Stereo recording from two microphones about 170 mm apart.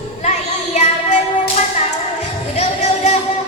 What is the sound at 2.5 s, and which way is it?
Music, 40° left (ahead or behind).